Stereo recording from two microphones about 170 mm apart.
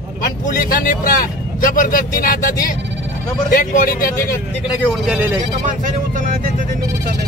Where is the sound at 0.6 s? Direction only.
55° left (ahead or behind).